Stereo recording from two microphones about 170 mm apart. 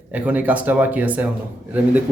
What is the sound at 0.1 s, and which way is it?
A man's voice, 10° right (ahead or behind).